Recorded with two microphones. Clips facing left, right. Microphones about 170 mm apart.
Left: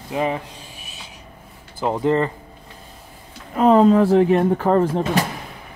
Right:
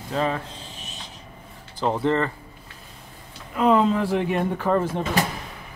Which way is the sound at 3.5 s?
40° left (ahead or behind).